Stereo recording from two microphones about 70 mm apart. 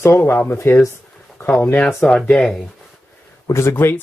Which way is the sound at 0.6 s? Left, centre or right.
Left.